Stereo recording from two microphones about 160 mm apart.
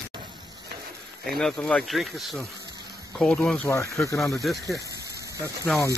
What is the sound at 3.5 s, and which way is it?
Speech, 15° left (ahead or behind).